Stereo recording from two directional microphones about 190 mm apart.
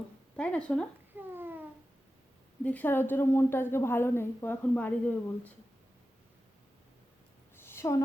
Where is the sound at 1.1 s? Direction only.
10° right (ahead or behind).